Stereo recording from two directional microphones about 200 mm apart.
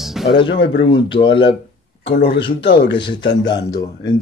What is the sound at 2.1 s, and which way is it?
Speech, 50° left (ahead or behind).